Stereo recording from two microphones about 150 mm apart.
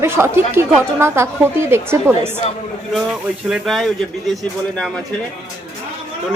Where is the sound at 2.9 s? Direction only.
5° right (ahead or behind).